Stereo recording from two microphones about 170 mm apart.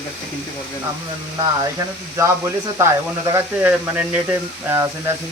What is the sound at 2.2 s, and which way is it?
Speech, 20° right (ahead or behind).